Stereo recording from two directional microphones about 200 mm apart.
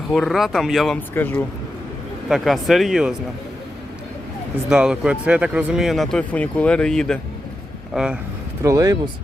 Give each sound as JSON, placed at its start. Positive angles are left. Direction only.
{"t": 0.1, "sound": "speech", "side_deg": 0}
{"t": 2.3, "sound": "speech", "side_deg": 0}
{"t": 4.7, "sound": "speech", "side_deg": -5}
{"t": 8.6, "sound": "speech", "side_deg": -15}